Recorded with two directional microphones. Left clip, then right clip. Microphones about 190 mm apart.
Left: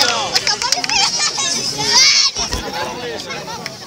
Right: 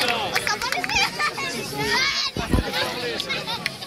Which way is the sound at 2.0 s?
45° right (ahead or behind).